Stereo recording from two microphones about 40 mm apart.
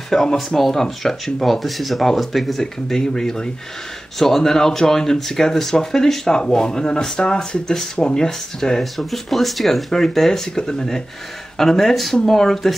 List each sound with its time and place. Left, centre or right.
0.1 s speech: centre
0.6 s speech: centre
2.6 s speech: centre
8.9 s speech: centre